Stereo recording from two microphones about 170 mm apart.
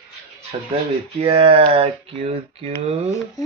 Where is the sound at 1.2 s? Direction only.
35° right (ahead or behind).